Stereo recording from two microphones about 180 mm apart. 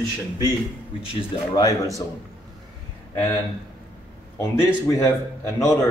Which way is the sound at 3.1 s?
10° left (ahead or behind).